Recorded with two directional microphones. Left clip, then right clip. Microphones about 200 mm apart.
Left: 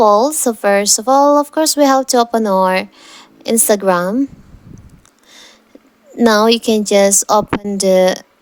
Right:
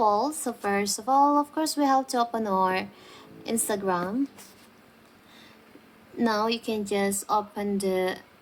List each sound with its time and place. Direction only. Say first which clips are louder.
0.0 s speech: left 13 dB; 45° left (ahead or behind)
6.1 s speech: left 15 dB; 50° left (ahead or behind)